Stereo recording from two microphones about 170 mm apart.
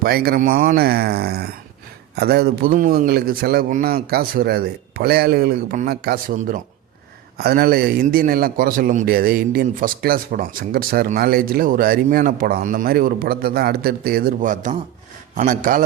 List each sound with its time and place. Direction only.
0.0 s a man's voice: 65° right (ahead or behind)
7.3 s a man's voice: 65° right (ahead or behind)